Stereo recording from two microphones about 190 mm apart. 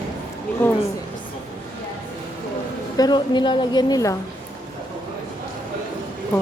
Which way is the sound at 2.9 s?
20° left (ahead or behind).